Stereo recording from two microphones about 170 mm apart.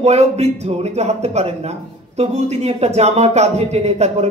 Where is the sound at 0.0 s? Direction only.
40° right (ahead or behind).